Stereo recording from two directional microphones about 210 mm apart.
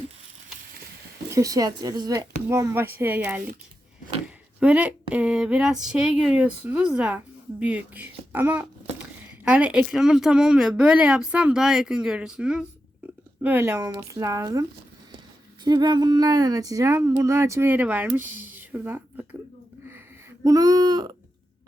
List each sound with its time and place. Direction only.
1.3 s a woman's voice: 15° right (ahead or behind)
4.6 s a woman's voice: 5° right (ahead or behind)
15.6 s a woman's voice: 20° right (ahead or behind)
20.4 s speech: 15° right (ahead or behind)